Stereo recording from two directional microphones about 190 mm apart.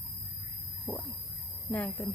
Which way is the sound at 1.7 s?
10° left (ahead or behind).